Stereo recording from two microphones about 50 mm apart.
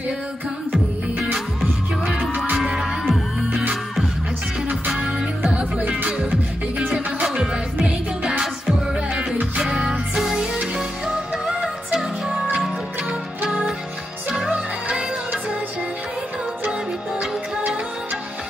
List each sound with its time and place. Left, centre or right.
2.5 s music: centre
4.8 s music: centre
5.6 s music: right
6.9 s music: centre
14.3 s music: centre